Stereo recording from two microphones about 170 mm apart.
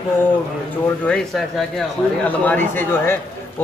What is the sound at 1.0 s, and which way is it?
Speech, 5° left (ahead or behind).